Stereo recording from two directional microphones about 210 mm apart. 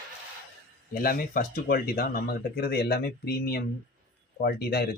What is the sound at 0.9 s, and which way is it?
Speech, 45° left (ahead or behind).